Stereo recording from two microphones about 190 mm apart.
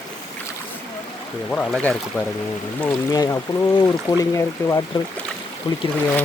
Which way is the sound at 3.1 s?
15° left (ahead or behind).